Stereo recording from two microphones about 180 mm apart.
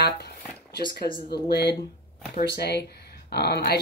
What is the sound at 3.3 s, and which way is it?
Speech, 65° left (ahead or behind).